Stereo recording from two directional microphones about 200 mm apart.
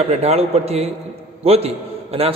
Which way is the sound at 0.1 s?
30° right (ahead or behind).